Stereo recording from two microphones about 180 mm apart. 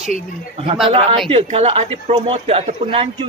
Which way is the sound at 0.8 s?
30° right (ahead or behind).